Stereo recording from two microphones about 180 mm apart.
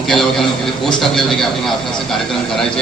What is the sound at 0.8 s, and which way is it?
A man's voice, centre (ahead or behind).